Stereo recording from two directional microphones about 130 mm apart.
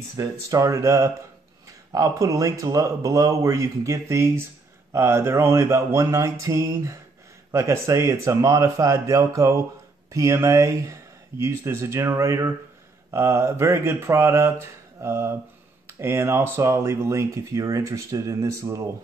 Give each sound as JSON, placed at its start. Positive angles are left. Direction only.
{"t": 0.1, "sound": "speech", "side_deg": -25}